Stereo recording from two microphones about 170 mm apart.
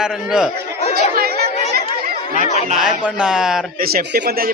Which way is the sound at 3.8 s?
60° right (ahead or behind).